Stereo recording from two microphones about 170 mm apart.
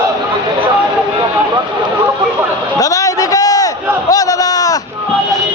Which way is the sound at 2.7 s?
20° left (ahead or behind).